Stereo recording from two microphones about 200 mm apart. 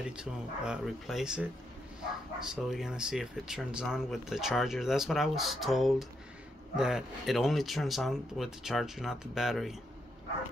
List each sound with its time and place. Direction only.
0.2 s speech: 5° right (ahead or behind)